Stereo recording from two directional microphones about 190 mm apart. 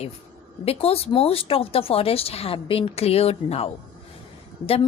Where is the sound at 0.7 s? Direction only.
30° left (ahead or behind).